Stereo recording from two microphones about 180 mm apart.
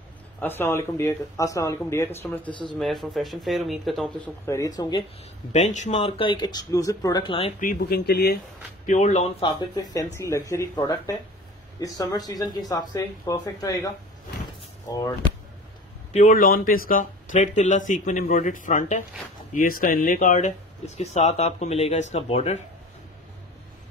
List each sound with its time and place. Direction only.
0.4 s speech: 10° left (ahead or behind)
2.5 s speech: 25° left (ahead or behind)
2.8 s speech: centre (ahead or behind)
4.5 s speech: 20° left (ahead or behind)
5.5 s speech: 40° left (ahead or behind); by 7.3 s 20° left (ahead or behind)
7.6 s speech: 60° left (ahead or behind)
8.8 s speech: 40° left (ahead or behind)
9.4 s speech: 25° left (ahead or behind)
16.1 s speech: 45° left (ahead or behind)